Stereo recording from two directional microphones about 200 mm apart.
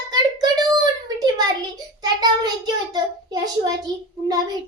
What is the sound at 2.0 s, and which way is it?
Child singing, 20° right (ahead or behind).